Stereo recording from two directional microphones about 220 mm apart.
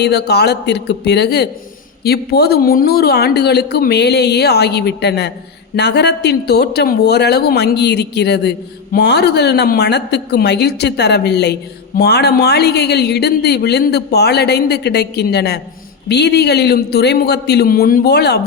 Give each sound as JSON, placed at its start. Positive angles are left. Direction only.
{"t": 0.0, "sound": "a woman's voice", "side_deg": 50}